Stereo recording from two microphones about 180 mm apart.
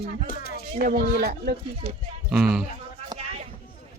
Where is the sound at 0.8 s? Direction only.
65° right (ahead or behind).